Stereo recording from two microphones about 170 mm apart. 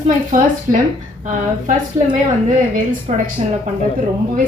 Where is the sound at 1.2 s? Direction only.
50° right (ahead or behind).